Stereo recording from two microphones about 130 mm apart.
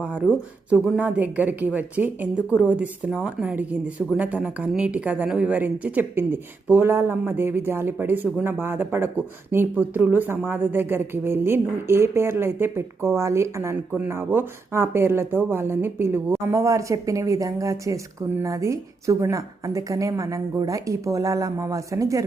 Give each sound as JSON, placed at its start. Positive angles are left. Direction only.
{"t": 0.7, "sound": "a woman's voice", "side_deg": -10}